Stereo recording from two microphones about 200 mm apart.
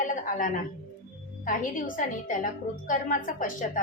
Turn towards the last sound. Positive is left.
turn(degrees=40)  # may be behind; listen again after turning